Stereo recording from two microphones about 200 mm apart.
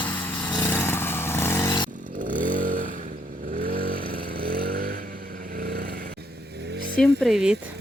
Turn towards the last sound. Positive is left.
turn(degrees=-5)  # may be behind; listen again after turning